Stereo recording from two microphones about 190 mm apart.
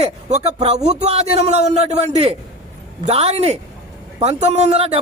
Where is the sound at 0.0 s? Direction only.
35° right (ahead or behind).